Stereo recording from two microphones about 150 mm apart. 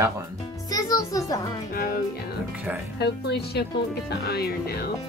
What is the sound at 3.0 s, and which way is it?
Speech, 90° left.